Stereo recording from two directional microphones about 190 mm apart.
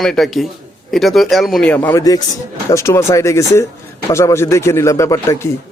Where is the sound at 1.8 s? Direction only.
15° left (ahead or behind).